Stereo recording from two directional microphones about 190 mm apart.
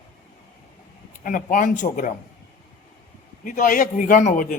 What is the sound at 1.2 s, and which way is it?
Speech, 45° left (ahead or behind).